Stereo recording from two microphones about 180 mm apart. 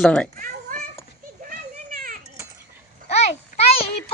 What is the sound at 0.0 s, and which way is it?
Speech, 5° left (ahead or behind).